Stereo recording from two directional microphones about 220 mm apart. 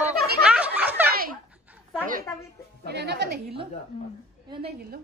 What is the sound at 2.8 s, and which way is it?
Speech, 50° right (ahead or behind).